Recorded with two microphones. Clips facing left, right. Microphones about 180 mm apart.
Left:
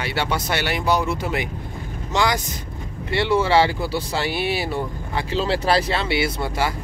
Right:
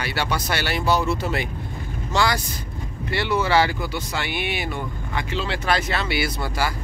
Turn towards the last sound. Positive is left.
turn(degrees=25)  # may be behind; listen again after turning